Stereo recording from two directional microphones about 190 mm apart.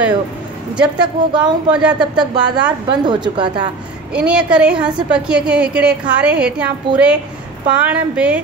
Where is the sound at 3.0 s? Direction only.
25° right (ahead or behind).